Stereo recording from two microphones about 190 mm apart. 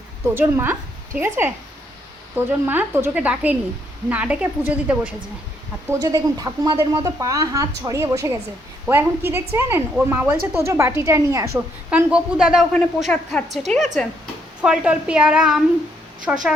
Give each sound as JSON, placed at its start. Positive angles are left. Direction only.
{"t": 0.3, "sound": "a woman's voice", "side_deg": -10}
{"t": 6.0, "sound": "a woman's voice", "side_deg": -20}